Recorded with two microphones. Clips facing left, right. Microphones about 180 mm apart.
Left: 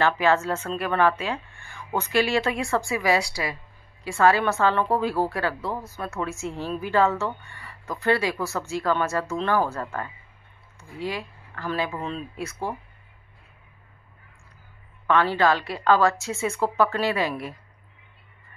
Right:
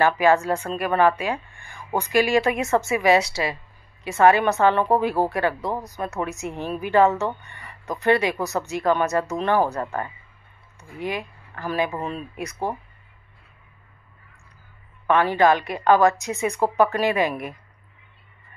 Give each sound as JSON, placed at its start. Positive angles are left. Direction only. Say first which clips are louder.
{"t": 0.0, "sound": "a woman's voice", "louder": "right 3 dB", "side_deg": -15}
{"t": 15.0, "sound": "a woman's voice", "louder": "right 3 dB", "side_deg": -15}